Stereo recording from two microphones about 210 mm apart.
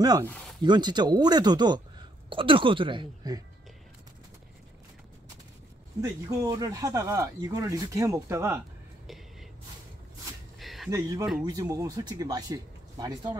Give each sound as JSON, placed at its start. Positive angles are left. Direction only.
{"t": 0.0, "sound": "a woman's voice", "side_deg": -20}
{"t": 5.9, "sound": "speech", "side_deg": -15}
{"t": 9.0, "sound": "whispering", "side_deg": 0}
{"t": 10.6, "sound": "a sound", "side_deg": 0}
{"t": 10.9, "sound": "speech", "side_deg": -15}